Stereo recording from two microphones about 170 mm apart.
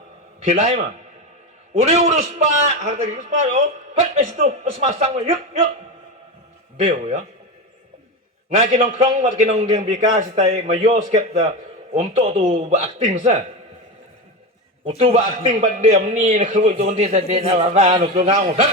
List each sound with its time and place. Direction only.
0.5 s a man's voice: 35° right (ahead or behind)
6.7 s a man's voice: 40° right (ahead or behind)
8.4 s a man's voice: 40° right (ahead or behind)
14.8 s a man's voice: 35° right (ahead or behind)